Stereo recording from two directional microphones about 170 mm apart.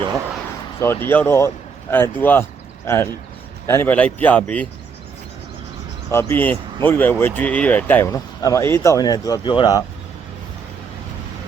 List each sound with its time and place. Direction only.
0.8 s speech: 15° left (ahead or behind)
6.1 s speech: 15° left (ahead or behind)